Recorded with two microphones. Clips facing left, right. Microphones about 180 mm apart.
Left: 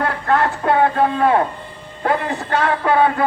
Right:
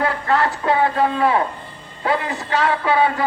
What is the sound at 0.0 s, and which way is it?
A man's voice, 55° left (ahead or behind).